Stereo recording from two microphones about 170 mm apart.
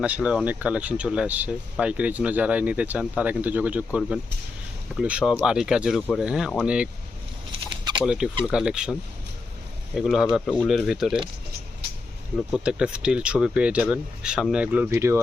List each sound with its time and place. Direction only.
0.0 s speech: 10° right (ahead or behind)
7.7 s a sound: 25° right (ahead or behind)
8.0 s speech: 5° right (ahead or behind)
12.5 s speech: 5° right (ahead or behind)